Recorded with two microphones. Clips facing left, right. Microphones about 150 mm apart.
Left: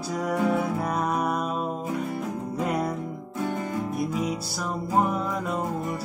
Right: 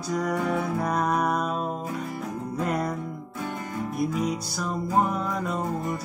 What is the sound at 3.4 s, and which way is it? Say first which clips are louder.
Music: left 5 dB; 20° left (ahead or behind).